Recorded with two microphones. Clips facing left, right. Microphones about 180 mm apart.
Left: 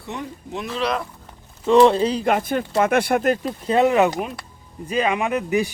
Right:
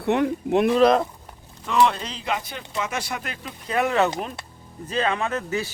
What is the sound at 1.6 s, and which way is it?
Speech, 30° left (ahead or behind).